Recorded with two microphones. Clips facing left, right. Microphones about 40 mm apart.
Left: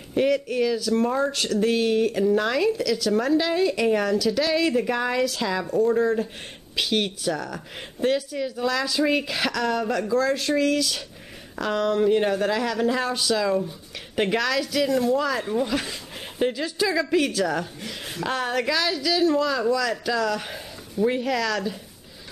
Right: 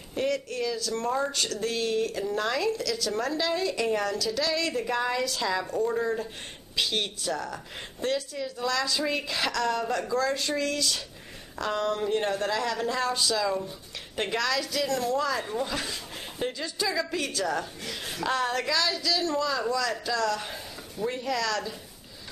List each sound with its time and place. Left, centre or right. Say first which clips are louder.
0.1 s speech: left 7 dB; centre
1.1 s speech: left 5 dB; centre
8.0 s speech: left 6 dB; centre
19.6 s speech: left 5 dB; centre